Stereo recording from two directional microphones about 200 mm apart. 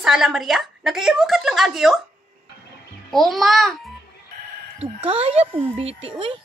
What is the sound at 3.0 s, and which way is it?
Speech, centre (ahead or behind).